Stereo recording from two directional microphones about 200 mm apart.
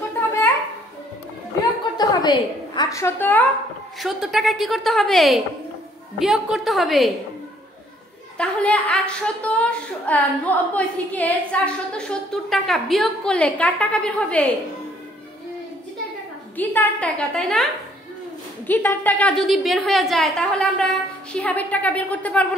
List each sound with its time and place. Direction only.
2.0 s a woman's voice: 20° left (ahead or behind); by 7.1 s centre (ahead or behind)
8.4 s a woman's voice: 5° left (ahead or behind)
16.5 s a woman's voice: 10° left (ahead or behind)
18.7 s a woman's voice: 10° left (ahead or behind)